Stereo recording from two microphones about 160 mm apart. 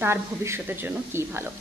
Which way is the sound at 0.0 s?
15° right (ahead or behind).